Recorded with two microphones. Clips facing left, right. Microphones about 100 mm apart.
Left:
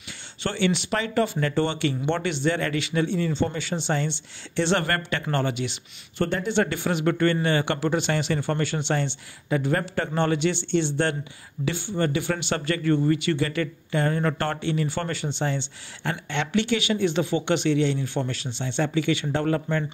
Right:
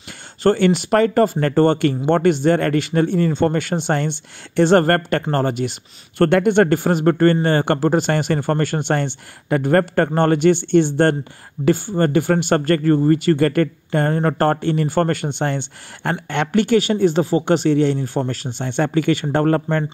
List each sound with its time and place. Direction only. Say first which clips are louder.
0.4 s speech: right 10 dB; 45° right (ahead or behind)
6.2 s speech: right 10 dB; 60° right (ahead or behind)